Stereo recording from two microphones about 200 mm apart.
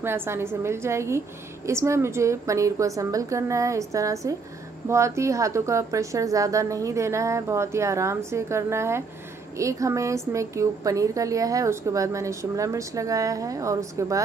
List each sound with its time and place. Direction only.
0.0 s a woman's voice: 10° right (ahead or behind)